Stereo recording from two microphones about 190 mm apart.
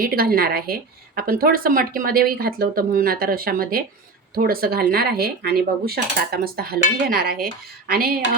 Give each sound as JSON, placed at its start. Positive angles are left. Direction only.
{"t": 0.0, "sound": "speech", "side_deg": -50}